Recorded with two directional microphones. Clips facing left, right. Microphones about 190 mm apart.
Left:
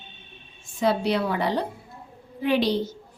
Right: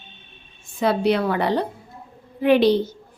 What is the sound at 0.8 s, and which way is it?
A woman's voice, 60° right (ahead or behind).